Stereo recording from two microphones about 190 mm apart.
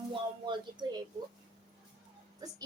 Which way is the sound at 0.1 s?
25° right (ahead or behind).